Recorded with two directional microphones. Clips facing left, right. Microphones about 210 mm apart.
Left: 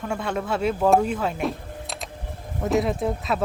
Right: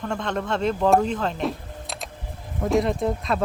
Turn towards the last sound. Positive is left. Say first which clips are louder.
# right 1 dB
turn(degrees=5)  # may be behind; listen again after turning